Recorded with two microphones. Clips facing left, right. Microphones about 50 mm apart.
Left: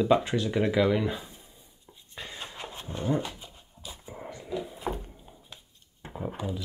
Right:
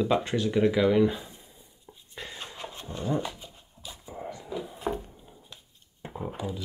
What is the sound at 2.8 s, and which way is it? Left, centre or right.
Speech, centre.